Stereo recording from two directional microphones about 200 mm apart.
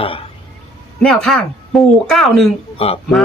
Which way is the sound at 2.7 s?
30° left (ahead or behind).